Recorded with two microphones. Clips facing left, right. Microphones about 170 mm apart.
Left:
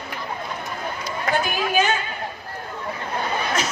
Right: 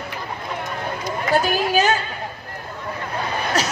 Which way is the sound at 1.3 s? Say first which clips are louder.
Right 3 dB; 35° right (ahead or behind).